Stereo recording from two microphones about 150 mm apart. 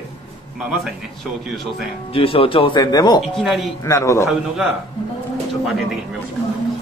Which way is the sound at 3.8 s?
20° left (ahead or behind).